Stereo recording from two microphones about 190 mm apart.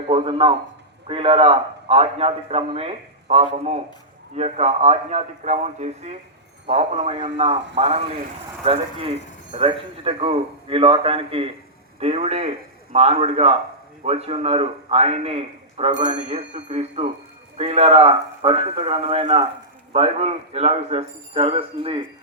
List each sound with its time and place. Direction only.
0.1 s a man's voice: 25° right (ahead or behind)